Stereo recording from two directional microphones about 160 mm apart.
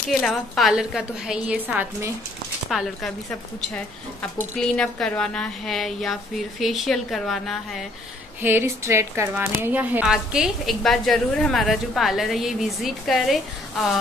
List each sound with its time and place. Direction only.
0.1 s a woman's voice: centre (ahead or behind)
8.4 s a woman's voice: 15° right (ahead or behind)